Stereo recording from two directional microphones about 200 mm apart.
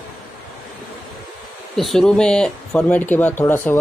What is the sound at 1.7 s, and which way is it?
Speech, centre (ahead or behind).